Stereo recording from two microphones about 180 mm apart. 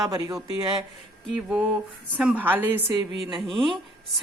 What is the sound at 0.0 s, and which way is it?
Speech, 20° right (ahead or behind).